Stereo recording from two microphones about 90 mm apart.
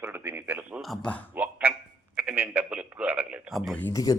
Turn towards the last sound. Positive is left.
turn(degrees=40)  # may be behind; listen again after turning